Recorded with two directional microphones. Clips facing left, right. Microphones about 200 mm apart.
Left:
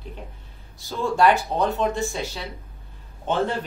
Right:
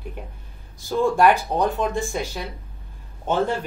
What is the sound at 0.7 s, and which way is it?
Speech, 15° right (ahead or behind).